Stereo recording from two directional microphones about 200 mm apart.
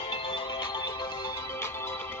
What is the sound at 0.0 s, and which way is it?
Music, 25° left (ahead or behind).